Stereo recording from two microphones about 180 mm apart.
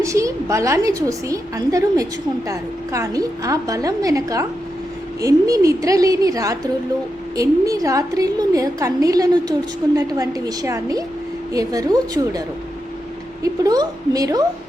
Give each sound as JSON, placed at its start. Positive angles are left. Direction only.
{"t": 0.0, "sound": "a woman's voice", "side_deg": -15}
{"t": 13.4, "sound": "a woman's voice", "side_deg": -20}